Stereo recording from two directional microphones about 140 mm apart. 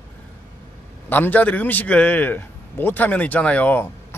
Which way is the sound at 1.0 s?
15° left (ahead or behind).